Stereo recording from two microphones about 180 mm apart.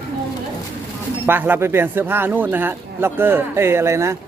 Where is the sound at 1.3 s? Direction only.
10° right (ahead or behind).